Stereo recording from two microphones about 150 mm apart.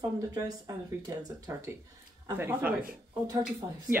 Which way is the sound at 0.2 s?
25° right (ahead or behind).